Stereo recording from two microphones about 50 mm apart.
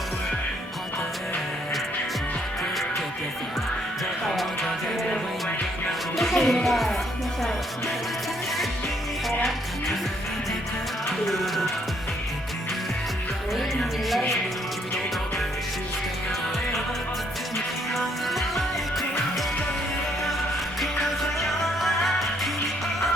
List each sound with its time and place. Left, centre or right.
6.1 s music: centre
11.3 s music: centre
14.1 s music: centre
17.9 s music: centre
21.8 s music: centre